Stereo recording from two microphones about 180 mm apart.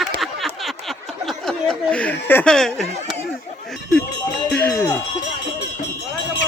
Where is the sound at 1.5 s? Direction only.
5° left (ahead or behind).